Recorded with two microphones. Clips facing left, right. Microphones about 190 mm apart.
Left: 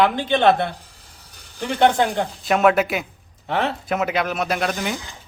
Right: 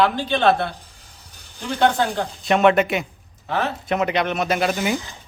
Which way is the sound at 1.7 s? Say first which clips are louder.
Left 2 dB; 20° left (ahead or behind).